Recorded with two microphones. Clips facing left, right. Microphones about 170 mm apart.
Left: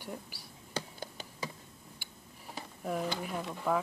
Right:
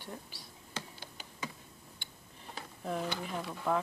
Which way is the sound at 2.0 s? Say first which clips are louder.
Left 1 dB; 5° left (ahead or behind).